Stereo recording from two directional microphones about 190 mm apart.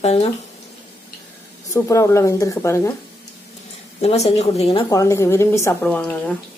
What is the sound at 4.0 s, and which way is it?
A woman's voice, 30° left (ahead or behind).